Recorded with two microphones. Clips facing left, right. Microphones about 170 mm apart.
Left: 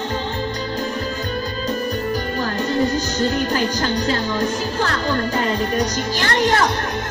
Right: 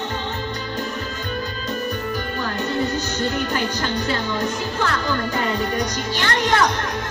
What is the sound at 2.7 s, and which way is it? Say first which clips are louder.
Speech: left 5 dB; 35° left (ahead or behind).